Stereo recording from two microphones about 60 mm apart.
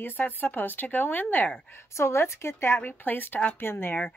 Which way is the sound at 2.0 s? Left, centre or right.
Left.